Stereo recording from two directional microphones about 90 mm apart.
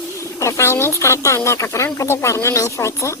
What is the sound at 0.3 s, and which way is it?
A woman's voice, 35° left (ahead or behind).